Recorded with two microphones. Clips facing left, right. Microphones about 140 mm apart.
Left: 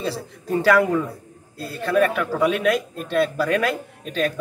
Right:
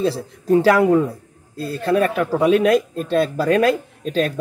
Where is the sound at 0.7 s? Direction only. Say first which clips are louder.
Even; 30° right (ahead or behind).